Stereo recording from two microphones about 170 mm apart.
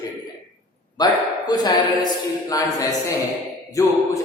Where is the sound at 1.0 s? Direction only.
25° left (ahead or behind).